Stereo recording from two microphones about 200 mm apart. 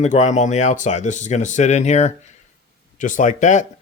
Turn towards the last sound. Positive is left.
turn(degrees=40)  # may be behind; listen again after turning